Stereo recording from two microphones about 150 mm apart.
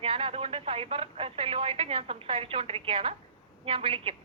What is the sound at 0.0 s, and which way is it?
Speech, 40° right (ahead or behind).